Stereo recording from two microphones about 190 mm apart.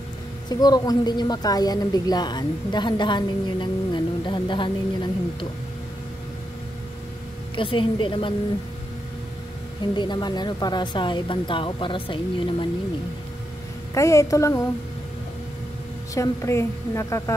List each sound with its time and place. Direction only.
0.5 s a woman's voice: 20° left (ahead or behind)
7.5 s a woman's voice: 25° left (ahead or behind)
9.9 s a woman's voice: 25° left (ahead or behind)
13.9 s a woman's voice: 15° left (ahead or behind)
16.2 s a woman's voice: 15° left (ahead or behind)